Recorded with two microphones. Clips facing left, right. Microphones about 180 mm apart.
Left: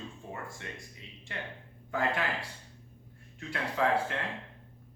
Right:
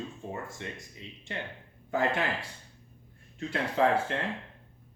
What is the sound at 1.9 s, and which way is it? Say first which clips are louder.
Speech: right 3 dB; 25° right (ahead or behind).